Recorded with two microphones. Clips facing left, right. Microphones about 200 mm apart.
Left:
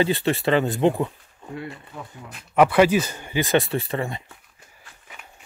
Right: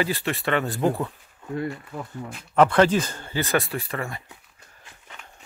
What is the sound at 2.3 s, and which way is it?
Speech, 10° left (ahead or behind).